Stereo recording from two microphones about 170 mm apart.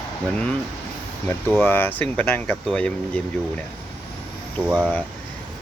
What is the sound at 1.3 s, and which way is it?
Speech, 10° left (ahead or behind).